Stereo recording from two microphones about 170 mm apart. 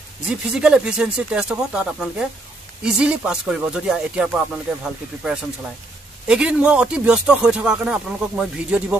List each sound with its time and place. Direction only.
0.3 s speech: 5° right (ahead or behind)
6.2 s speech: 5° right (ahead or behind)